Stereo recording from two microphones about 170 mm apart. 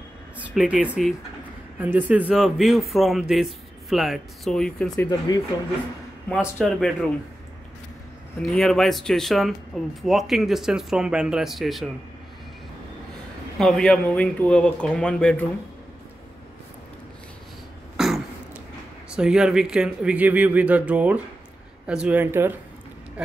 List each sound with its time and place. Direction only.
0.4 s speech: 5° right (ahead or behind)
5.3 s speech: 20° left (ahead or behind)
6.3 s speech: 5° left (ahead or behind)
8.4 s speech: 5° left (ahead or behind)
13.6 s speech: centre (ahead or behind)
17.9 s throat clearing: centre (ahead or behind)
19.0 s speech: 5° right (ahead or behind)